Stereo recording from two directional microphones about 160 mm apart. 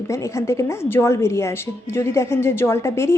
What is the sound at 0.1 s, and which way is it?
A woman's voice, 20° left (ahead or behind).